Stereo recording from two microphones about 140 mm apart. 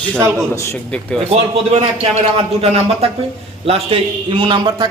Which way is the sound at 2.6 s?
45° right (ahead or behind).